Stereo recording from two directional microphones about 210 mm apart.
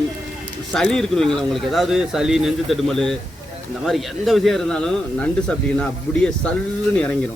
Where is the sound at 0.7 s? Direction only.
5° left (ahead or behind).